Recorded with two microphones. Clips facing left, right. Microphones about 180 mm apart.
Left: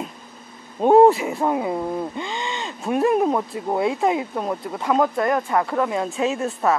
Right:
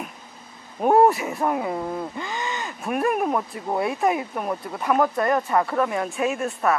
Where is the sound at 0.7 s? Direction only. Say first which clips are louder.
Left 4 dB; 20° left (ahead or behind).